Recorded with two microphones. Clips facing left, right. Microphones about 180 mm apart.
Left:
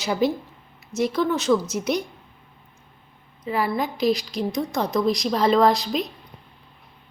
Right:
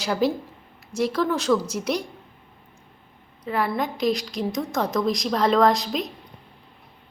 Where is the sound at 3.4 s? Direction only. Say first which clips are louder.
Left 1 dB; 5° left (ahead or behind).